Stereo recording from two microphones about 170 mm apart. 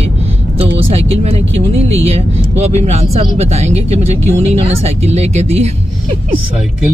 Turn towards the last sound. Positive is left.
turn(degrees=-40)  # may be behind; listen again after turning